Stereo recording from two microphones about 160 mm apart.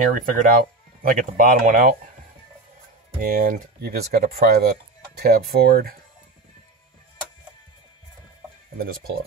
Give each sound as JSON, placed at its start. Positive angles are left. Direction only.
{"t": 0.1, "sound": "speech", "side_deg": -60}
{"t": 3.2, "sound": "speech", "side_deg": -60}
{"t": 8.7, "sound": "speech", "side_deg": -70}